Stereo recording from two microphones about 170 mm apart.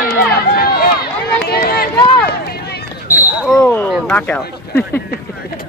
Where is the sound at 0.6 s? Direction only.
65° left (ahead or behind).